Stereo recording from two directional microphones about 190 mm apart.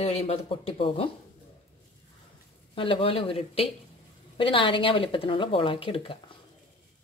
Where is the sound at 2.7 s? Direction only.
30° left (ahead or behind).